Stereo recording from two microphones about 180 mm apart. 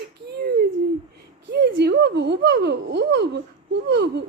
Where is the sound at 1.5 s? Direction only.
70° right (ahead or behind).